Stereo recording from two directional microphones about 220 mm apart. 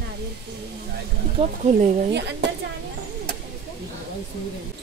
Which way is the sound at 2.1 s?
50° right (ahead or behind).